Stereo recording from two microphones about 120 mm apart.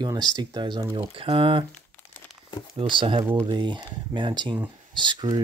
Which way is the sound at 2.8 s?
45° right (ahead or behind).